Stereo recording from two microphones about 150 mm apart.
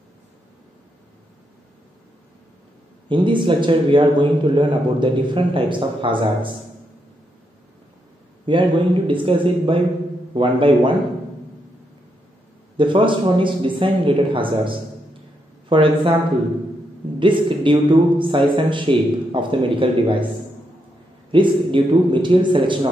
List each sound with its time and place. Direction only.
3.1 s a man's voice: 35° right (ahead or behind)
8.5 s a man's voice: 35° right (ahead or behind)
12.7 s a man's voice: 35° right (ahead or behind)
17.2 s a man's voice: 35° right (ahead or behind)
21.3 s a man's voice: 35° right (ahead or behind)